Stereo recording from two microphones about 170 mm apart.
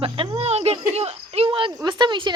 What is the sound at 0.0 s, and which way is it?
Cricket, 30° right (ahead or behind).